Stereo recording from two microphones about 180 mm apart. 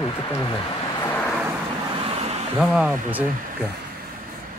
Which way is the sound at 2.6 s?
5° right (ahead or behind).